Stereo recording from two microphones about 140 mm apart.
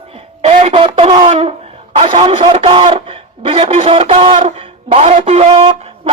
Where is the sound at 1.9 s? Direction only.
45° right (ahead or behind).